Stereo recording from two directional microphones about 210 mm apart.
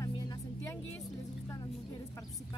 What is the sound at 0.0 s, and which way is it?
Music, 15° left (ahead or behind).